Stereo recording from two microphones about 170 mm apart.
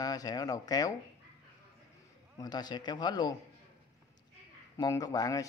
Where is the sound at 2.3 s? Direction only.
25° left (ahead or behind).